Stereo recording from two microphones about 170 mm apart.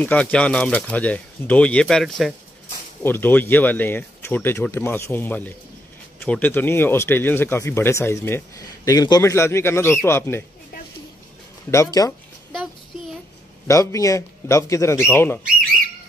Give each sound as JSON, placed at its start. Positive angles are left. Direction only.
{"t": 0.0, "sound": "speech", "side_deg": 10}
{"t": 3.0, "sound": "speech", "side_deg": 10}
{"t": 11.7, "sound": "speech", "side_deg": 20}
{"t": 13.7, "sound": "speech", "side_deg": 20}